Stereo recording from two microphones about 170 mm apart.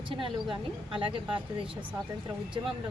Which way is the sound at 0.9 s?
30° right (ahead or behind).